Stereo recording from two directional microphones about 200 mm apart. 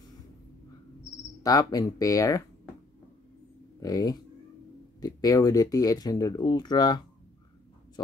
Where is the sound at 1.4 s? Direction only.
20° left (ahead or behind).